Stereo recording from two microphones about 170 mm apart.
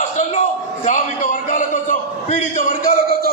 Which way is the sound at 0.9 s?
50° left (ahead or behind).